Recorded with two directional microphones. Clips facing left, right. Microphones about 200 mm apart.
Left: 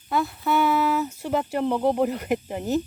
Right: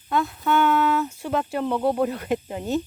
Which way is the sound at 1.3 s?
15° left (ahead or behind).